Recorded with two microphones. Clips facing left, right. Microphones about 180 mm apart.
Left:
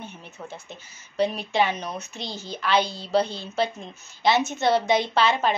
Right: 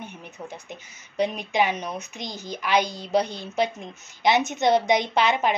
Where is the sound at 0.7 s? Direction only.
15° right (ahead or behind).